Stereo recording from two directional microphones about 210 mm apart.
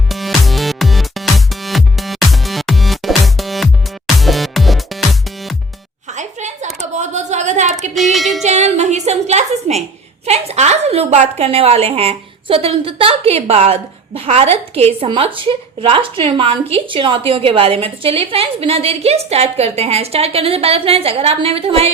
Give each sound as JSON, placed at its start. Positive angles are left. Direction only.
{"t": 0.1, "sound": "music", "side_deg": 0}
{"t": 6.1, "sound": "a sound", "side_deg": -35}
{"t": 7.9, "sound": "child singing", "side_deg": 0}
{"t": 8.4, "sound": "music", "side_deg": -35}
{"t": 10.2, "sound": "a woman's voice", "side_deg": -30}